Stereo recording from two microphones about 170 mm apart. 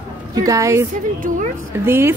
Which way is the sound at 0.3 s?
20° right (ahead or behind).